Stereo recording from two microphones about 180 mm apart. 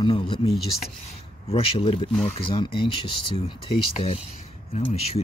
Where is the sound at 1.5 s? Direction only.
30° left (ahead or behind).